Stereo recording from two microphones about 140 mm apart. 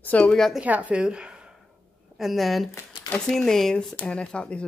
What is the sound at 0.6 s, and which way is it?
A woman's voice, 10° right (ahead or behind).